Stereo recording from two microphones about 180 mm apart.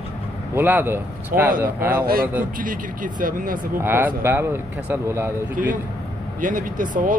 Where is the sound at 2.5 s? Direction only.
50° right (ahead or behind).